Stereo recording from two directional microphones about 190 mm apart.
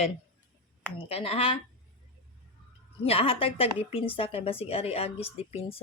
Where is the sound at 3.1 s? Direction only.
30° left (ahead or behind).